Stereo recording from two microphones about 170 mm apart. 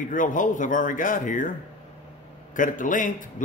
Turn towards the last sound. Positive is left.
turn(degrees=50)  # may be behind; listen again after turning